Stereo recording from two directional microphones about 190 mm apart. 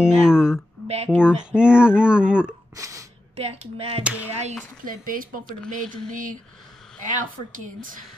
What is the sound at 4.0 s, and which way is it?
Speech, 5° right (ahead or behind).